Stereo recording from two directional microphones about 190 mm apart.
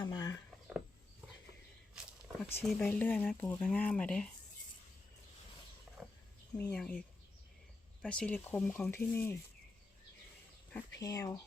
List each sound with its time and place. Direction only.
0.0 s a sound: 20° left (ahead or behind)
2.4 s speech: 5° left (ahead or behind)
6.6 s speech: 5° left (ahead or behind)
8.0 s speech: 5° left (ahead or behind)
11.0 s speech: 15° left (ahead or behind)